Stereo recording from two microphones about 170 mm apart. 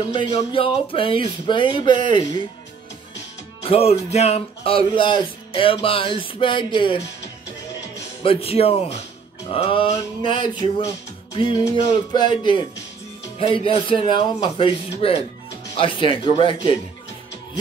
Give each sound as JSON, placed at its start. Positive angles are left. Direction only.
{"t": 0.1, "sound": "speech", "side_deg": 25}
{"t": 3.6, "sound": "speech", "side_deg": 35}
{"t": 8.2, "sound": "speech", "side_deg": 35}
{"t": 12.1, "sound": "speech", "side_deg": 25}